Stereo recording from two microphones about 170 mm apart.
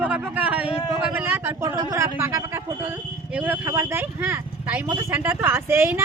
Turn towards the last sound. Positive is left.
turn(degrees=-15)  # may be behind; listen again after turning